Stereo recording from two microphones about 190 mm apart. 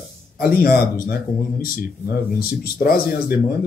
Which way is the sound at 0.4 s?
55° left (ahead or behind).